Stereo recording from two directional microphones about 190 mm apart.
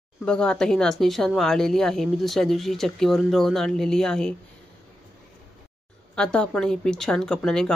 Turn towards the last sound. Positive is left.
turn(degrees=5)  # may be behind; listen again after turning